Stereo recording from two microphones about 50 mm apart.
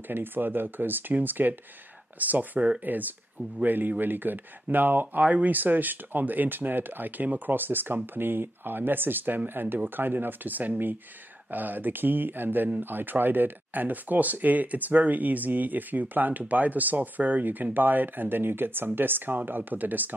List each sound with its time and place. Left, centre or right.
0.1 s speech: right